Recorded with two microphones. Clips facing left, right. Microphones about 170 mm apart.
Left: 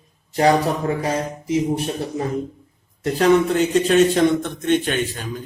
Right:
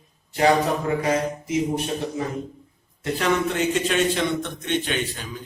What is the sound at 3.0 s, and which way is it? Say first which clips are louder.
A man's voice: left 7 dB; 40° left (ahead or behind).